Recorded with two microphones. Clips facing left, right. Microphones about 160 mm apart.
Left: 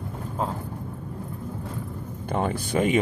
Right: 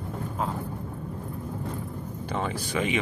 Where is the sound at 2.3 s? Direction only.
50° left (ahead or behind).